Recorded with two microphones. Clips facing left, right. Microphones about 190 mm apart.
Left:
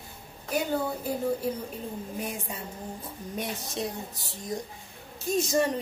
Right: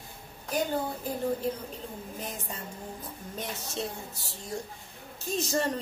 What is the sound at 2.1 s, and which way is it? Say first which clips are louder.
A woman's voice: left 4 dB; 10° left (ahead or behind).